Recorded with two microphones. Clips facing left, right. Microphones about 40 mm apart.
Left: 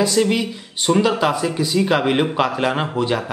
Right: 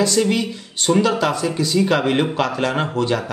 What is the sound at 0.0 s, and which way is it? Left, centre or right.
A man's voice, centre.